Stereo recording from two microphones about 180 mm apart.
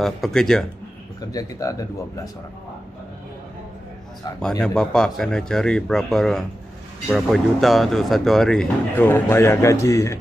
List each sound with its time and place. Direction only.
0.0 s speech: centre (ahead or behind)
1.2 s speech: 20° left (ahead or behind)
4.4 s speech: 5° left (ahead or behind)